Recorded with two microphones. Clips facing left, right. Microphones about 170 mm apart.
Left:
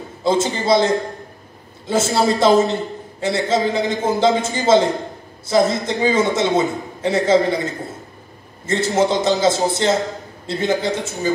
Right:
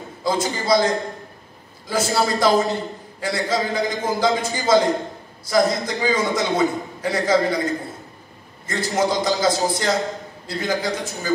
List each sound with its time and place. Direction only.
0.2 s a man's voice: 25° left (ahead or behind)